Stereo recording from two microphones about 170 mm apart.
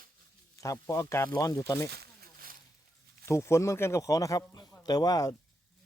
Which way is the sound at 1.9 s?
65° right (ahead or behind).